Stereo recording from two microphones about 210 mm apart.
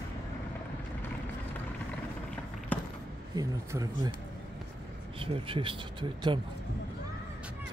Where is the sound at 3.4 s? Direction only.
20° right (ahead or behind).